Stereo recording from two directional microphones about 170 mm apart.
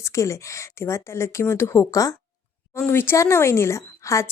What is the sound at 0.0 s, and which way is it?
Speech, 20° left (ahead or behind).